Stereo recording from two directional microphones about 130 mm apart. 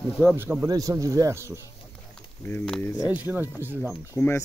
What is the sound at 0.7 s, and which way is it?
Speech, 25° right (ahead or behind).